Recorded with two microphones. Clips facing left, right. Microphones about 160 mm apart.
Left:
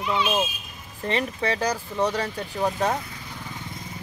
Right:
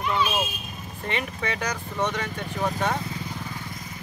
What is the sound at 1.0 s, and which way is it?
Speech, 35° left (ahead or behind).